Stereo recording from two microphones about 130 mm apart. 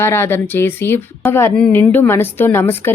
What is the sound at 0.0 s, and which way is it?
A woman's voice, 20° left (ahead or behind).